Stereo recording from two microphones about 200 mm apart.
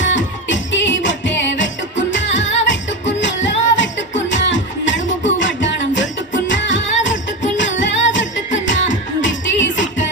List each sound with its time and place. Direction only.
0.0 s music: 65° left (ahead or behind)